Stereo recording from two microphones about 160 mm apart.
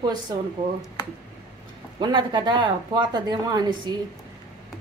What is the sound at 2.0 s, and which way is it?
Speech, 25° right (ahead or behind).